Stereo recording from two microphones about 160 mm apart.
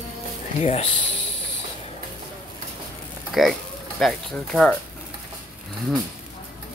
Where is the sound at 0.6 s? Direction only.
40° left (ahead or behind).